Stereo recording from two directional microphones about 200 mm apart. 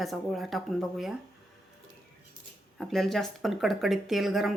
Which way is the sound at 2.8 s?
Centre (ahead or behind).